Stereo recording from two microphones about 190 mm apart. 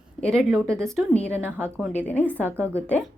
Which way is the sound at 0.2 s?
5° left (ahead or behind).